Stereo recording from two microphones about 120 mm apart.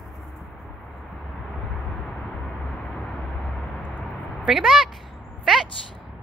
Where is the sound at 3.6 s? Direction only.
5° left (ahead or behind).